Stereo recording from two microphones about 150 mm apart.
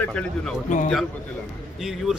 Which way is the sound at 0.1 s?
5° left (ahead or behind).